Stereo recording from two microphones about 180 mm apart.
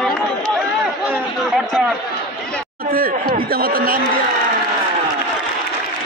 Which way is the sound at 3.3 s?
55° right (ahead or behind).